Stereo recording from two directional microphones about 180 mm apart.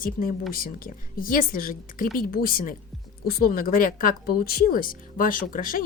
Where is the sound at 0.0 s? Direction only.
50° left (ahead or behind).